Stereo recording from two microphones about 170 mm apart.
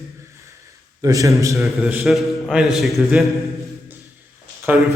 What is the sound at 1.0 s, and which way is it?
Speech, 20° right (ahead or behind).